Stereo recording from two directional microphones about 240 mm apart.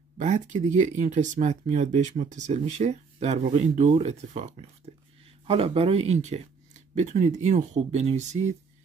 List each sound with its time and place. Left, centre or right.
0.2 s speech: right